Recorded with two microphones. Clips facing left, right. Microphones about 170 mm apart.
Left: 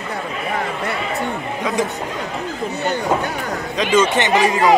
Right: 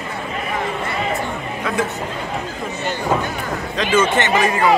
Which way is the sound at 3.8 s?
15° left (ahead or behind).